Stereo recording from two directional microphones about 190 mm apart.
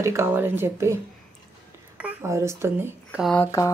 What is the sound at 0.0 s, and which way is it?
Speech, 15° right (ahead or behind).